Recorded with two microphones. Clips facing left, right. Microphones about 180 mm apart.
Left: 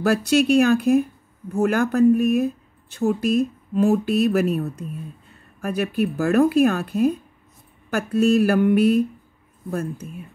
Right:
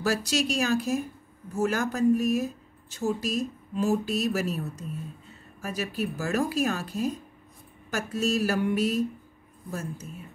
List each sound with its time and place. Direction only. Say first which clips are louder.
0.0 s speech: left 8 dB; 55° left (ahead or behind)